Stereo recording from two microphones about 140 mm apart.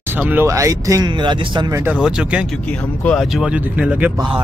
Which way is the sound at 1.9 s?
5° right (ahead or behind).